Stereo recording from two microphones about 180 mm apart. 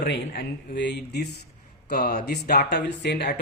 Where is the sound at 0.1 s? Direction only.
70° left (ahead or behind).